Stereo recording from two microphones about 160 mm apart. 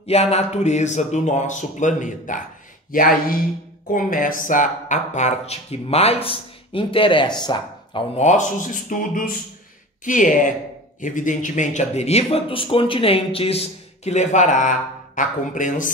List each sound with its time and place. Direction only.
0.0 s speech: 40° left (ahead or behind)
8.2 s speech: 50° left (ahead or behind)